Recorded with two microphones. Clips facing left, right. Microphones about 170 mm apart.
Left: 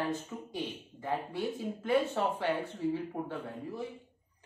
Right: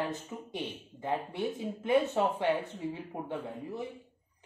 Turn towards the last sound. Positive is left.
turn(degrees=-20)  # may be behind; listen again after turning